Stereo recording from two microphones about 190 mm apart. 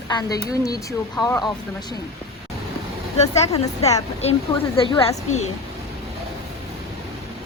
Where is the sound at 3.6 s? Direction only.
35° left (ahead or behind).